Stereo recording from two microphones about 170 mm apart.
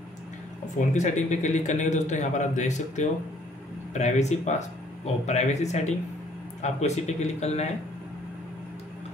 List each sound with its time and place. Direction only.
0.7 s a man's voice: 45° left (ahead or behind)